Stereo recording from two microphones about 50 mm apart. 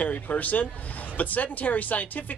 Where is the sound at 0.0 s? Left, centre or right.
Left.